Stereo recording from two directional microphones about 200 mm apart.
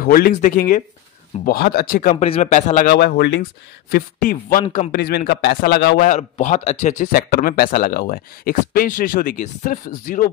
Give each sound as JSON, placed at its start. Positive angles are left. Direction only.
{"t": 0.0, "sound": "speech", "side_deg": 45}
{"t": 2.2, "sound": "speech", "side_deg": 30}
{"t": 3.9, "sound": "speech", "side_deg": 45}
{"t": 4.6, "sound": "speech", "side_deg": 30}
{"t": 4.9, "sound": "speech", "side_deg": 50}
{"t": 6.0, "sound": "speech", "side_deg": 35}